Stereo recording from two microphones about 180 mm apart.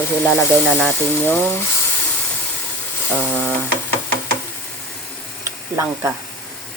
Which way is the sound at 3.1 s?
5° left (ahead or behind).